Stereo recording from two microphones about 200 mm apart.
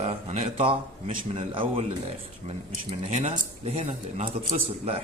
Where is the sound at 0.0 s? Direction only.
30° right (ahead or behind).